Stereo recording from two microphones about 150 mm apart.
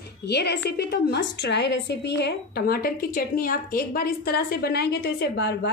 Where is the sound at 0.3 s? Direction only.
90° left.